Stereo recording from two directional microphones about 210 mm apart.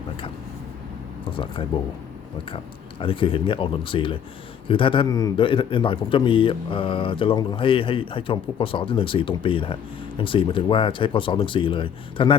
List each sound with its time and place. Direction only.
1.7 s a man's voice: 20° left (ahead or behind)
3.0 s a man's voice: 25° left (ahead or behind)